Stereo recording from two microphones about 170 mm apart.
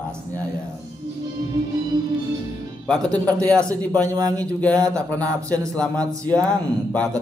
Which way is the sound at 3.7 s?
20° right (ahead or behind).